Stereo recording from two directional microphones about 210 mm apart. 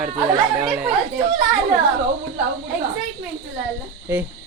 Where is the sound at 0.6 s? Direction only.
5° right (ahead or behind).